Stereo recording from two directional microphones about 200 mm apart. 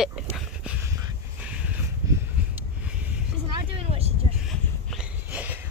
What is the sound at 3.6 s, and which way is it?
Vehicle, 25° right (ahead or behind).